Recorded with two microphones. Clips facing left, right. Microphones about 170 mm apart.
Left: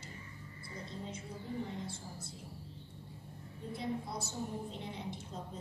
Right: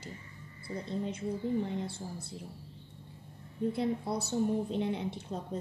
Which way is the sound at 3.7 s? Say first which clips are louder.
Right 2 dB; 65° right (ahead or behind).